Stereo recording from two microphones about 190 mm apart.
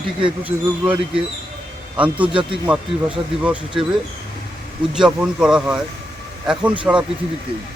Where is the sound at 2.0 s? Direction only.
10° right (ahead or behind).